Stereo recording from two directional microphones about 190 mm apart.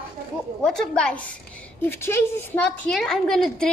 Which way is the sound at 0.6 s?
5° left (ahead or behind).